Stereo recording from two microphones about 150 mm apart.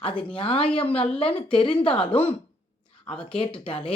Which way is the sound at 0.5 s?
35° left (ahead or behind).